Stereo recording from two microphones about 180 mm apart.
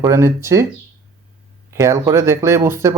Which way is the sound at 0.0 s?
15° right (ahead or behind).